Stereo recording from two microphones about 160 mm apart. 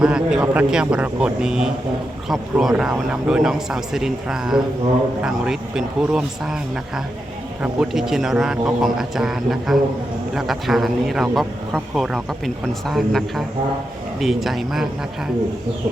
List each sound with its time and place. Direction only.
0.0 s speech: 5° right (ahead or behind)